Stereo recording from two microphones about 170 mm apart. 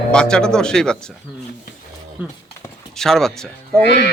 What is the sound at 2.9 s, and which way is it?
Speech, 5° left (ahead or behind).